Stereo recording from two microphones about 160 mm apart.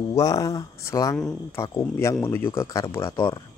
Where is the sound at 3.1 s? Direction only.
30° left (ahead or behind).